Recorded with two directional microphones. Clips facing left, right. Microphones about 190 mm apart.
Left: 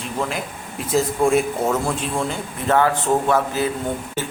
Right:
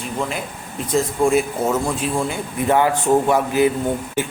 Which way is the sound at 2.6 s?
15° right (ahead or behind).